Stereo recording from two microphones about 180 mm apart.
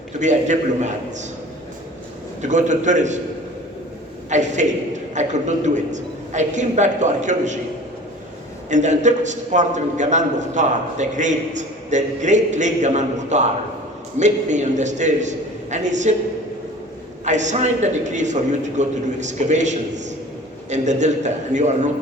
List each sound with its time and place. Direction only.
0.2 s a man's voice: 40° right (ahead or behind)
2.4 s a woman's voice: 40° right (ahead or behind)
4.3 s a woman's voice: 40° right (ahead or behind)
8.7 s a man's voice: 40° right (ahead or behind)
17.2 s a man's voice: 40° right (ahead or behind)